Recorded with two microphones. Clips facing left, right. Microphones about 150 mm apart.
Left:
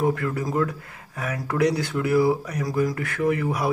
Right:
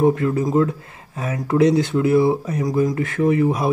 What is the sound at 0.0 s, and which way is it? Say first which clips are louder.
Speech: right 6 dB; 25° right (ahead or behind).